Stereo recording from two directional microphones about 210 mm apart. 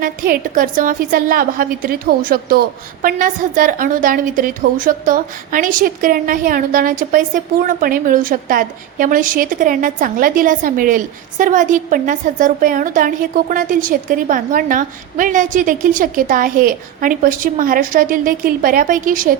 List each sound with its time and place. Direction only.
0.0 s a woman's voice: 40° right (ahead or behind)